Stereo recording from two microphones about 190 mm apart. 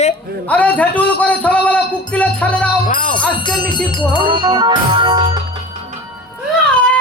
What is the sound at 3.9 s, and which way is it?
Music, 25° left (ahead or behind).